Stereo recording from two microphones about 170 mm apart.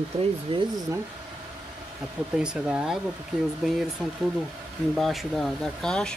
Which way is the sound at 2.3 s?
5° right (ahead or behind).